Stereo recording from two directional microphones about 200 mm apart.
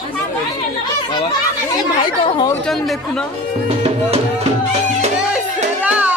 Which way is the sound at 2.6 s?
Centre (ahead or behind).